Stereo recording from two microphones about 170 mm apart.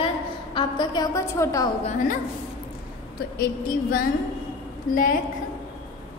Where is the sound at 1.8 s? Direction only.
45° left (ahead or behind).